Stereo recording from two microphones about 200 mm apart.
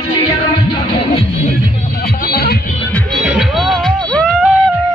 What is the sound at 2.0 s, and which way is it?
Music, 50° left (ahead or behind).